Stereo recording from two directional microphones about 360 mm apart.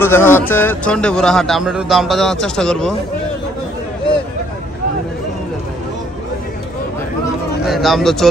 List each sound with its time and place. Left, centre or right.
0.0 s a man's voice: centre
7.6 s a man's voice: centre